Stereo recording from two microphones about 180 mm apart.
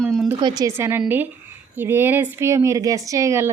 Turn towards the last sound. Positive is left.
turn(degrees=-15)  # may be behind; listen again after turning